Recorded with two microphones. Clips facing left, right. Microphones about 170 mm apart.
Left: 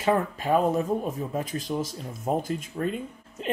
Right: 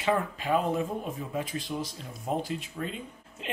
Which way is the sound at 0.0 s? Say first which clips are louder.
Left 4 dB; 45° left (ahead or behind).